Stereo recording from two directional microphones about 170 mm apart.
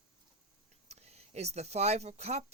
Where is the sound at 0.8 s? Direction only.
40° right (ahead or behind).